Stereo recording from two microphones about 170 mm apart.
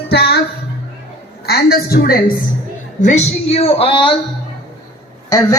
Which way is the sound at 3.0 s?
45° left (ahead or behind).